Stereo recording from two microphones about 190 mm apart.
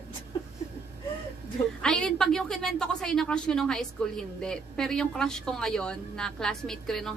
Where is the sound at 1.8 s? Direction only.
5° left (ahead or behind).